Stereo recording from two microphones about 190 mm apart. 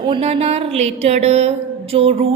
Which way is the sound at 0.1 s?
30° right (ahead or behind).